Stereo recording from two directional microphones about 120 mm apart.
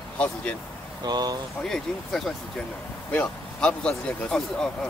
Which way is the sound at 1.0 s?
35° right (ahead or behind).